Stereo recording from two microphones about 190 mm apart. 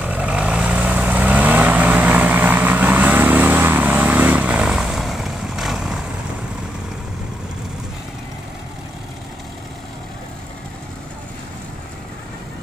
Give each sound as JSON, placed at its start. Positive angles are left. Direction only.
{"t": 0.0, "sound": "vehicle", "side_deg": -5}